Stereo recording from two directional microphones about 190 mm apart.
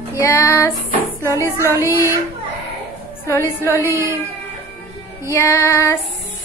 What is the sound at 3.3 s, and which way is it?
Music, 15° left (ahead or behind).